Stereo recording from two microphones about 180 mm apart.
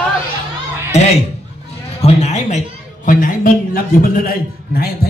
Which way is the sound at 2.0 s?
40° left (ahead or behind).